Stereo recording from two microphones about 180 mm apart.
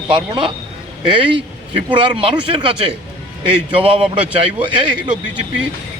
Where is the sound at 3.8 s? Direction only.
30° right (ahead or behind).